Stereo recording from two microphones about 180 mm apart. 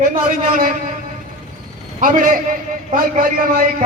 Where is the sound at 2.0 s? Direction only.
50° right (ahead or behind).